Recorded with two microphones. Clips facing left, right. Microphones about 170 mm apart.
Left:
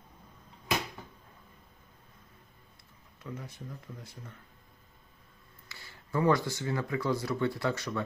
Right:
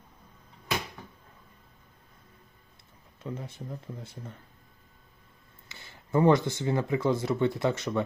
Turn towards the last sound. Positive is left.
turn(degrees=-20)  # may be behind; listen again after turning